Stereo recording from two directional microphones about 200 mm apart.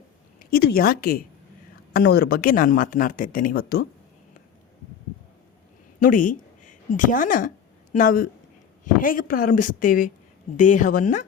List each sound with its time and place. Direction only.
0.3 s speech: 50° left (ahead or behind)
6.0 s a woman's voice: 45° left (ahead or behind)